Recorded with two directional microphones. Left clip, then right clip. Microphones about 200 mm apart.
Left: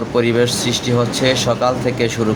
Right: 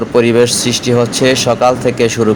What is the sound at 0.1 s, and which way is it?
Speech, 25° right (ahead or behind).